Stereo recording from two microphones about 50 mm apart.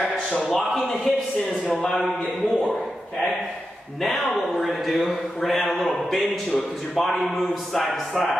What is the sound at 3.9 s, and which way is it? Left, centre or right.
A man's voice, centre.